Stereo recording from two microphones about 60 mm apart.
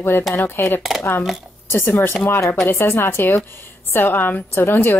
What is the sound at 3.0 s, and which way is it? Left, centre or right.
Speech, left.